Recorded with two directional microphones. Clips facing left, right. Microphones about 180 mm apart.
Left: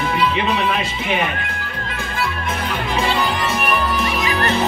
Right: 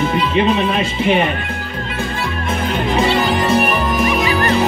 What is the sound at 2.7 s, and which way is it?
Music, 35° right (ahead or behind).